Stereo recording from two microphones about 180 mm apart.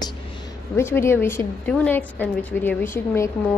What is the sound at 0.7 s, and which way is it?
A woman's voice, 15° left (ahead or behind).